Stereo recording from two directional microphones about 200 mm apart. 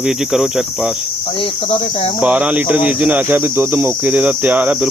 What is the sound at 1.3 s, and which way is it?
Speech, 30° left (ahead or behind).